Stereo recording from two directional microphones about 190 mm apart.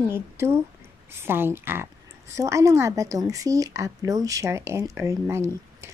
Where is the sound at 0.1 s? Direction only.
15° right (ahead or behind).